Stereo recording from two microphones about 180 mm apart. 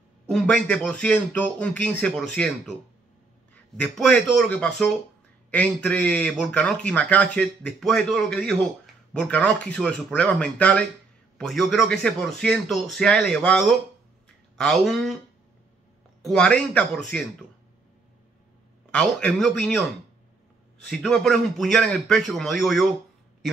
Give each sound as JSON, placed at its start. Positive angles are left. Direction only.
{"t": 0.3, "sound": "a man's voice", "side_deg": 5}
{"t": 3.7, "sound": "speech", "side_deg": 5}
{"t": 16.2, "sound": "speech", "side_deg": 5}
{"t": 18.9, "sound": "speech", "side_deg": 5}
{"t": 20.8, "sound": "speech", "side_deg": 5}